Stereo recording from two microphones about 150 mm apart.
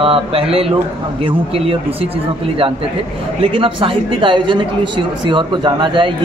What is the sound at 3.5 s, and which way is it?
A man's voice, 35° right (ahead or behind).